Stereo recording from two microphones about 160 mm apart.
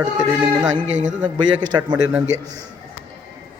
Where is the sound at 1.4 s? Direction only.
25° right (ahead or behind).